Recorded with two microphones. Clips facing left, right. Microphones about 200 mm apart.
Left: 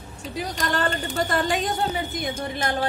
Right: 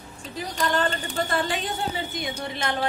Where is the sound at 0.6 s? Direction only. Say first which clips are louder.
Right 1 dB; 45° left (ahead or behind).